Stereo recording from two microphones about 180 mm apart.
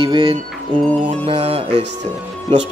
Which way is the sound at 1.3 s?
30° right (ahead or behind).